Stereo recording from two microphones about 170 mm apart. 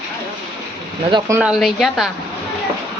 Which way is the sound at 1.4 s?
5° right (ahead or behind).